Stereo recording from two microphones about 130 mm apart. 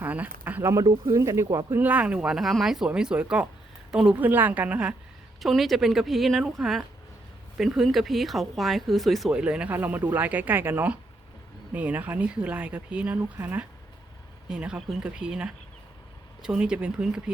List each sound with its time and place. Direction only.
0.0 s a sound: 10° right (ahead or behind)
0.4 s speech: 15° right (ahead or behind)
1.8 s a woman's voice: 10° right (ahead or behind)